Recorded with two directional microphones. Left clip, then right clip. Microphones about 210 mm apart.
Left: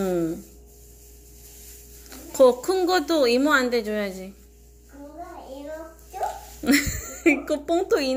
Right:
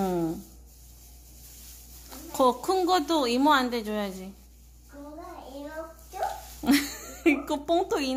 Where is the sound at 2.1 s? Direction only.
15° right (ahead or behind).